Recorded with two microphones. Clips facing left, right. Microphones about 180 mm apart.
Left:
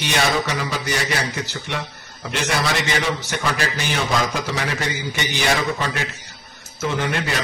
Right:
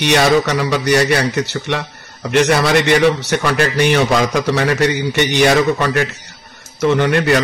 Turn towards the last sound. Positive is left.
turn(degrees=-60)  # may be behind; listen again after turning